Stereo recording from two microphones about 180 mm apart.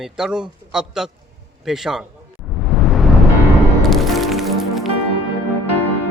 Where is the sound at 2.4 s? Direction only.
Centre (ahead or behind).